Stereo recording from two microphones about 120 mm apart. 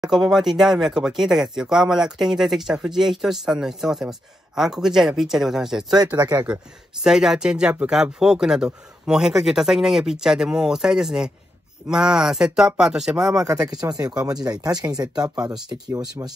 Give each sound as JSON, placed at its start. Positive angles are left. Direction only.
{"t": 0.0, "sound": "speech", "side_deg": -5}
{"t": 13.4, "sound": "speech", "side_deg": -30}